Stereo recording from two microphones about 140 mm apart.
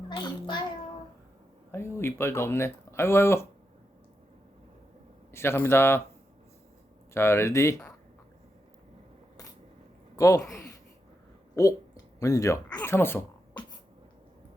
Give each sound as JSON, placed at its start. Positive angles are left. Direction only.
{"t": 0.1, "sound": "a child's voice", "side_deg": 35}
{"t": 1.7, "sound": "speech", "side_deg": 20}
{"t": 5.3, "sound": "a man's voice", "side_deg": 20}
{"t": 7.1, "sound": "speech", "side_deg": 20}
{"t": 10.2, "sound": "speech", "side_deg": 25}
{"t": 12.2, "sound": "a man's voice", "side_deg": 25}